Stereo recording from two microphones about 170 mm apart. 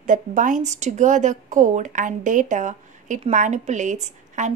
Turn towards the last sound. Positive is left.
turn(degrees=-45)  # may be behind; listen again after turning